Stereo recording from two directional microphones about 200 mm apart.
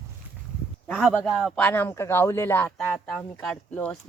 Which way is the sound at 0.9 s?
Centre (ahead or behind).